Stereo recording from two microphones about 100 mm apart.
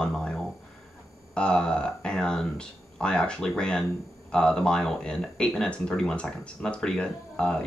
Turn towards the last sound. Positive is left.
turn(degrees=10)  # may be behind; listen again after turning